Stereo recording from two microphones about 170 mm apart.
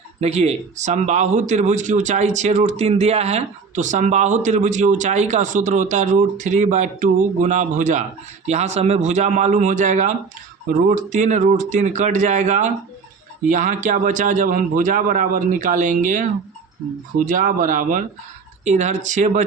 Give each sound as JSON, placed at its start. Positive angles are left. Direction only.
{"t": 0.2, "sound": "speech", "side_deg": -40}